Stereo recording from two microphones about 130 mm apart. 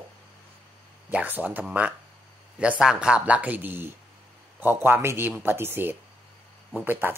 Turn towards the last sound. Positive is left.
turn(degrees=-15)  # may be behind; listen again after turning